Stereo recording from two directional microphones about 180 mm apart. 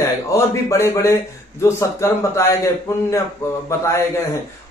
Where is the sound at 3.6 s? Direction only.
15° left (ahead or behind).